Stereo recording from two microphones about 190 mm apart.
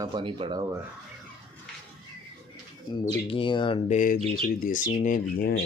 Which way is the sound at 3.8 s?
40° left (ahead or behind).